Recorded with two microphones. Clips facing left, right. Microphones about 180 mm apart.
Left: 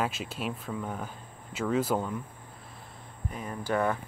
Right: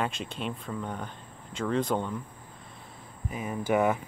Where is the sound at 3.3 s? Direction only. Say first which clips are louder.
Right 4 dB; 5° right (ahead or behind).